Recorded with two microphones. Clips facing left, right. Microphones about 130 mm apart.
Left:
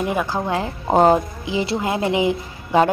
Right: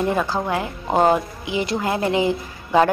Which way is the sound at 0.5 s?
25° left (ahead or behind).